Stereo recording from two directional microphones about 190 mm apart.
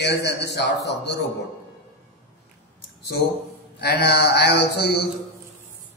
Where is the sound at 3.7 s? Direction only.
60° left (ahead or behind).